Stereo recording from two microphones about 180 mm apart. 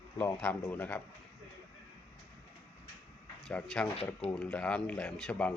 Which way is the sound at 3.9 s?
35° left (ahead or behind).